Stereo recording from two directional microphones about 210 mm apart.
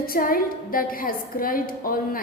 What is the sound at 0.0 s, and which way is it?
A woman's voice, 45° left (ahead or behind).